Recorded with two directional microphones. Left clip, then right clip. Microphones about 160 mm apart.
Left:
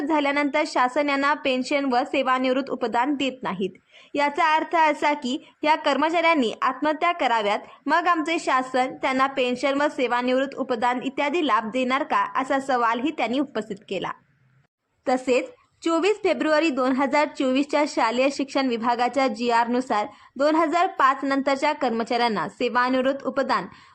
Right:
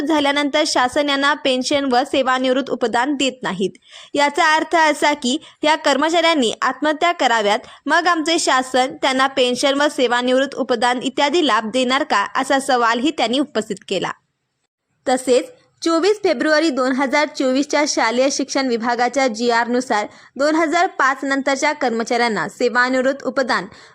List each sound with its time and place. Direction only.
0.1 s speech: 40° right (ahead or behind)
15.0 s a woman's voice: 25° right (ahead or behind)